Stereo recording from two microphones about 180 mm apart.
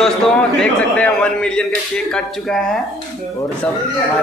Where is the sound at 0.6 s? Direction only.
5° left (ahead or behind).